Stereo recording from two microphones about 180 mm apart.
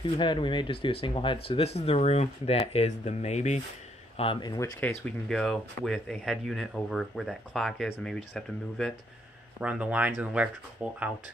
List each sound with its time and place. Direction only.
0.0 s speech: 25° left (ahead or behind)
4.2 s speech: 25° left (ahead or behind)
5.0 s speech: centre (ahead or behind)
9.6 s speech: 5° right (ahead or behind)